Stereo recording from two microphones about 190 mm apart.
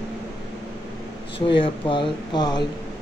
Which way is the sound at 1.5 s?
25° left (ahead or behind).